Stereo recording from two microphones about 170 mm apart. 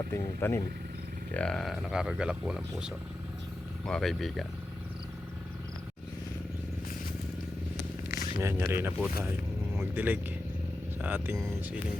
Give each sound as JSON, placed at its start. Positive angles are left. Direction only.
{"t": 0.1, "sound": "speech", "side_deg": 15}
{"t": 8.4, "sound": "speech", "side_deg": -15}